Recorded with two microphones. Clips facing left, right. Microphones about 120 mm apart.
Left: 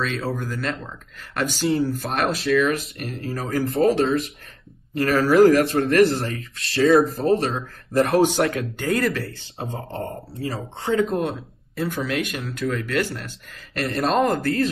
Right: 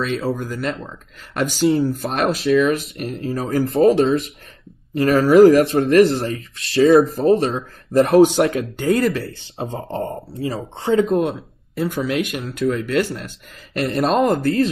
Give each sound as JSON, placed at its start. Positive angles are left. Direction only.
{"t": 0.4, "sound": "speech", "side_deg": -15}
{"t": 1.7, "sound": "speech", "side_deg": -25}
{"t": 2.3, "sound": "speech", "side_deg": -30}
{"t": 7.0, "sound": "speech", "side_deg": -15}
{"t": 7.9, "sound": "speech", "side_deg": -25}